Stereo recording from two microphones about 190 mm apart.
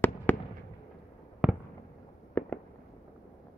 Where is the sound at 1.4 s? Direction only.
5° right (ahead or behind).